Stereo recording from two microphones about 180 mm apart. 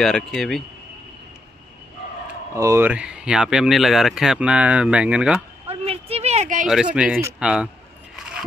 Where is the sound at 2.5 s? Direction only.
15° right (ahead or behind).